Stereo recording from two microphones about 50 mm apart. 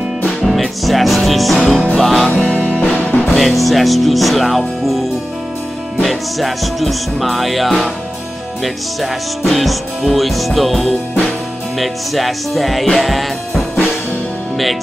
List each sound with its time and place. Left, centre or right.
0.5 s music: centre
2.2 s music: centre
3.3 s music: centre
6.0 s music: centre